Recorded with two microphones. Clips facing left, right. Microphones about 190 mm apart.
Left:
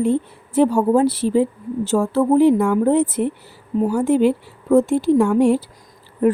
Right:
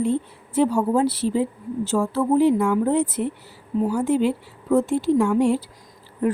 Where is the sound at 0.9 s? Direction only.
60° left (ahead or behind).